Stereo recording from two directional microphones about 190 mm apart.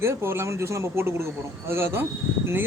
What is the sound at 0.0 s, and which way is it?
A man's voice, 15° right (ahead or behind).